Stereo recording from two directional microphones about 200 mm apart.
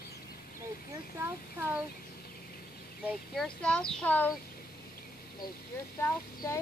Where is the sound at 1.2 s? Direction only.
15° right (ahead or behind).